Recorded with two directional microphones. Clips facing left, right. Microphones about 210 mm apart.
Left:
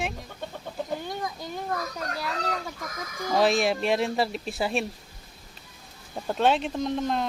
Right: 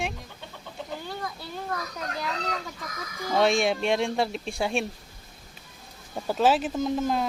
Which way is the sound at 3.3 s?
Centre (ahead or behind).